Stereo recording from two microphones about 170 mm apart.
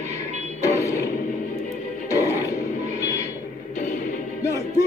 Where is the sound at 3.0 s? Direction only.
20° left (ahead or behind).